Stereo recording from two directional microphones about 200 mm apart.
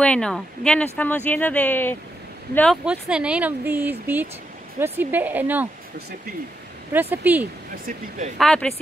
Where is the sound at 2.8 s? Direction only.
5° right (ahead or behind).